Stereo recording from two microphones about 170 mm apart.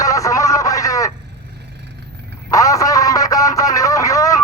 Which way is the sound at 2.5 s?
20° left (ahead or behind).